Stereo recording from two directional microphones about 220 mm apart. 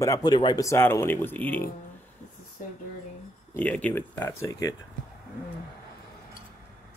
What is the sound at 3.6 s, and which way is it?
A man's voice, 5° left (ahead or behind).